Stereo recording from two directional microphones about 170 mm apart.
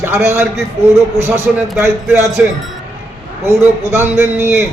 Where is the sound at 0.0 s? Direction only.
15° right (ahead or behind).